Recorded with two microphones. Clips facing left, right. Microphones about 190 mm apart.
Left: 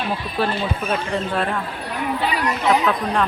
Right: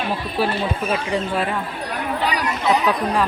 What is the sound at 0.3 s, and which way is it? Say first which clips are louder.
Speech: right 1 dB; 10° right (ahead or behind).